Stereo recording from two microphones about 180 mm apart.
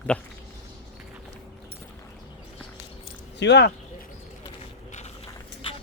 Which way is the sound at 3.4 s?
70° left (ahead or behind).